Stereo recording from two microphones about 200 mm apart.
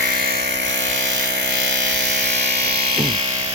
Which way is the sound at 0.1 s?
50° right (ahead or behind).